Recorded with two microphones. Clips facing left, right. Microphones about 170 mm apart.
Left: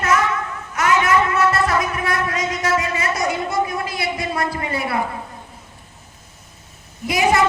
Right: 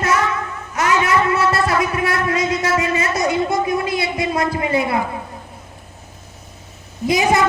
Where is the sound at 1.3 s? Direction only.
30° right (ahead or behind).